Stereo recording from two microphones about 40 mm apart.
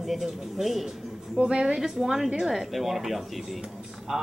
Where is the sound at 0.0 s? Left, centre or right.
Centre.